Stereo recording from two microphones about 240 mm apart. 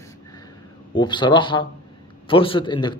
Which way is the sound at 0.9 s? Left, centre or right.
Centre.